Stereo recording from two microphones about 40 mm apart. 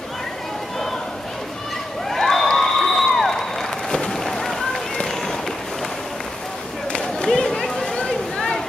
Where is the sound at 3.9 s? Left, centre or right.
Centre.